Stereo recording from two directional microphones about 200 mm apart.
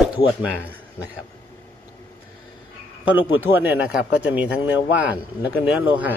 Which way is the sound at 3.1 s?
10° right (ahead or behind).